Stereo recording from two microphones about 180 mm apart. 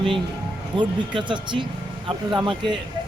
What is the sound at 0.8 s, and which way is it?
Speech, 25° right (ahead or behind).